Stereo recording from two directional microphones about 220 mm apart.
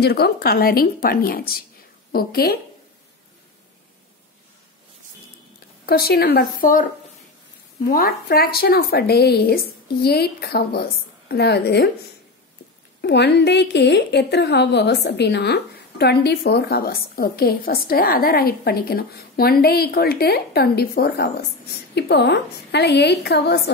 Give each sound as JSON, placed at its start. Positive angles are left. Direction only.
{"t": 0.0, "sound": "a woman's voice", "side_deg": 45}
{"t": 5.9, "sound": "a woman's voice", "side_deg": 45}
{"t": 7.9, "sound": "a woman's voice", "side_deg": 45}
{"t": 13.0, "sound": "a woman's voice", "side_deg": 50}